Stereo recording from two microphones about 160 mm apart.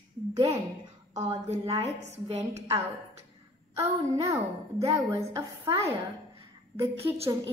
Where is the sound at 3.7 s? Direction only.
20° right (ahead or behind).